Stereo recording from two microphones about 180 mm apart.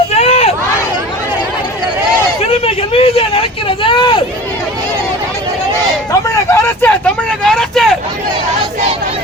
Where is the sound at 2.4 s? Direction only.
35° left (ahead or behind).